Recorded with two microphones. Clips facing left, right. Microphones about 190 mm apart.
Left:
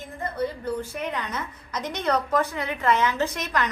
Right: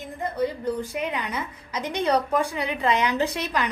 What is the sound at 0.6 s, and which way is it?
A woman's voice, 15° right (ahead or behind).